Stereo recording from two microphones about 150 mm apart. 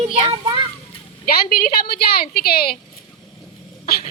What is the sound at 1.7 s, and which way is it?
Speech, 90° left.